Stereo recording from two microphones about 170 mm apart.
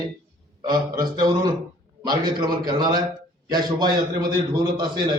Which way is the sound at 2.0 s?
25° right (ahead or behind).